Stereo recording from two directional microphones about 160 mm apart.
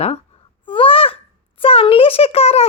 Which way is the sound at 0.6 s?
35° left (ahead or behind).